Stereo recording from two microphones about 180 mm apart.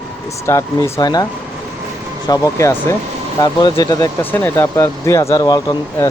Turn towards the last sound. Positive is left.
turn(degrees=20)  # may be behind; listen again after turning